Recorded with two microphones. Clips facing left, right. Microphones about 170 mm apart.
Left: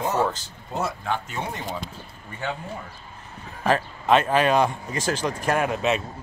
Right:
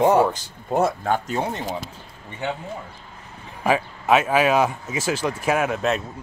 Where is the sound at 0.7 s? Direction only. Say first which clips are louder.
Right 7 dB; 55° right (ahead or behind).